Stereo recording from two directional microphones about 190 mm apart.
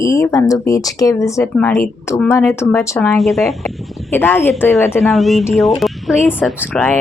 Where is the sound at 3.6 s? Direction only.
10° left (ahead or behind).